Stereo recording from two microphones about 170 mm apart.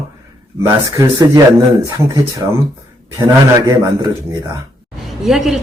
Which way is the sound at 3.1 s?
20° right (ahead or behind).